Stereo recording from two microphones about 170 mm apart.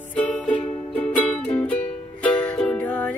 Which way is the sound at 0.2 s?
10° left (ahead or behind).